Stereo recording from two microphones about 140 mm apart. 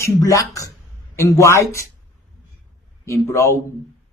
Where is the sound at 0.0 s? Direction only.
20° left (ahead or behind).